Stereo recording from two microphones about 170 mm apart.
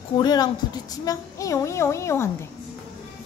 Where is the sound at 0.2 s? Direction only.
25° left (ahead or behind).